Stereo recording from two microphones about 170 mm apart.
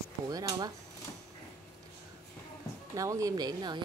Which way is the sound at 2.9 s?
20° right (ahead or behind).